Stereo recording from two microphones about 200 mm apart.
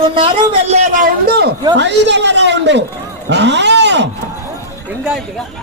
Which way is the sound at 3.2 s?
60° right (ahead or behind).